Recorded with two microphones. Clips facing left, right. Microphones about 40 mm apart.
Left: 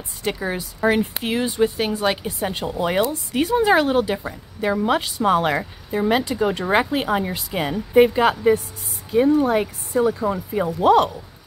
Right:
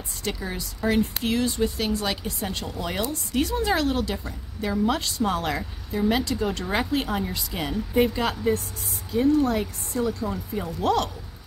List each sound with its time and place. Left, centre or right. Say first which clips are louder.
0.2 s speech: left 6 dB; left